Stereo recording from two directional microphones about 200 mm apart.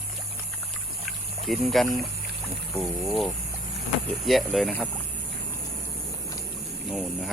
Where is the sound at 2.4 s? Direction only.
Centre (ahead or behind).